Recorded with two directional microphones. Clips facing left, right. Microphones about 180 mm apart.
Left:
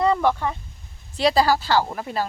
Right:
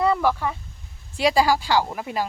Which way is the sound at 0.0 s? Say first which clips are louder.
Left 1 dB; 5° right (ahead or behind).